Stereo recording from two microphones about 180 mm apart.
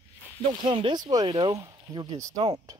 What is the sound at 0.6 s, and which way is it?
Speech, 25° right (ahead or behind).